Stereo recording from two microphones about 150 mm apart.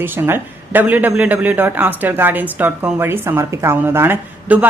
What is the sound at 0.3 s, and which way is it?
A woman's voice, 10° right (ahead or behind).